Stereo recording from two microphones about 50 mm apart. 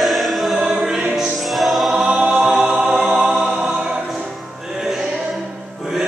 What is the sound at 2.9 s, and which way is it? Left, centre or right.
Music, centre.